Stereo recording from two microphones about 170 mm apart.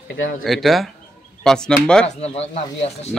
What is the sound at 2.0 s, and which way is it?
Speech, 40° left (ahead or behind).